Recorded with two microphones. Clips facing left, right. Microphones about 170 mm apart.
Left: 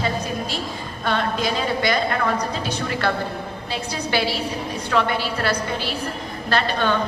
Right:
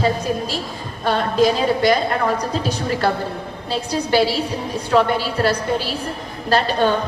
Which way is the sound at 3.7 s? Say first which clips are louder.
Right 7 dB; 40° right (ahead or behind).